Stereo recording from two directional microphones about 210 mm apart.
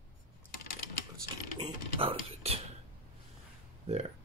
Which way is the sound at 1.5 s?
25° right (ahead or behind).